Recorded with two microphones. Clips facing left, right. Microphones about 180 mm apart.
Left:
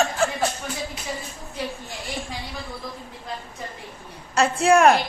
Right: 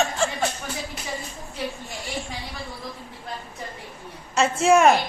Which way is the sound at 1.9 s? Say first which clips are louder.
Even; centre (ahead or behind).